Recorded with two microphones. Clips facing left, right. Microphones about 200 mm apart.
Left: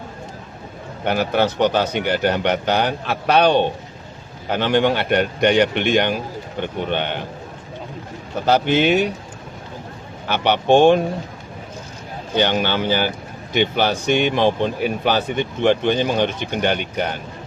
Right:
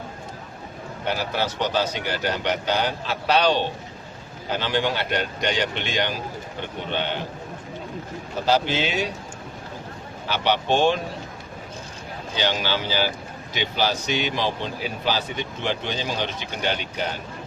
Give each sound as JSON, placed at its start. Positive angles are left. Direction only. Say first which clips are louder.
{"t": 1.0, "sound": "speech", "louder": "left 7 dB", "side_deg": 60}
{"t": 8.4, "sound": "speech", "louder": "left 6 dB", "side_deg": 55}
{"t": 10.2, "sound": "speech", "louder": "left 6 dB", "side_deg": 60}
{"t": 12.3, "sound": "speech", "louder": "left 6 dB", "side_deg": 55}